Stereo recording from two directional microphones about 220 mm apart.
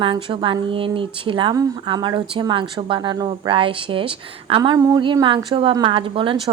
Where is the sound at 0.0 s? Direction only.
25° right (ahead or behind).